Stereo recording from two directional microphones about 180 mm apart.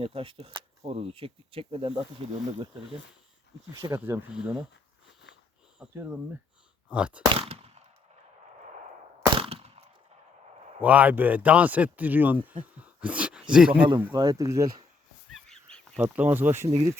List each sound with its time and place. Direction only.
0.0 s speech: 30° right (ahead or behind)
3.7 s a man's voice: 20° right (ahead or behind)
5.9 s a man's voice: 10° right (ahead or behind)
6.8 s a sound: 5° right (ahead or behind)
7.3 s a sound: 35° right (ahead or behind)
9.4 s a sound: 35° right (ahead or behind)
10.8 s a man's voice: 10° right (ahead or behind)
14.0 s speech: 20° right (ahead or behind)
15.4 s goose: 5° left (ahead or behind)
16.0 s a man's voice: 10° right (ahead or behind)